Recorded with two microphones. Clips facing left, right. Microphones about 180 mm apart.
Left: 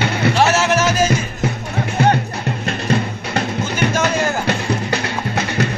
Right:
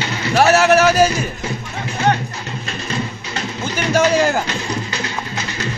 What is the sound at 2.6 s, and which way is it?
Music, 55° left (ahead or behind).